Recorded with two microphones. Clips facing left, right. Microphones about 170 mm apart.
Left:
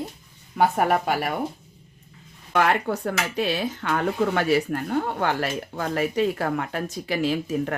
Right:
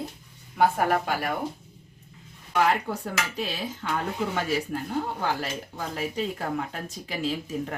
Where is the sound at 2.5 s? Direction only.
70° left (ahead or behind).